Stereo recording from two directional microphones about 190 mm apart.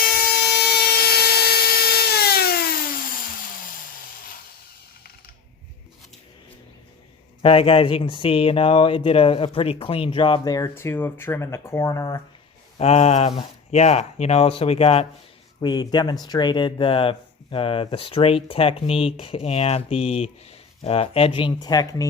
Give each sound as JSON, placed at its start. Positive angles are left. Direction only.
{"t": 0.0, "sound": "a sound", "side_deg": 55}
{"t": 7.4, "sound": "speech", "side_deg": 30}
{"t": 12.8, "sound": "speech", "side_deg": 35}
{"t": 15.6, "sound": "speech", "side_deg": 20}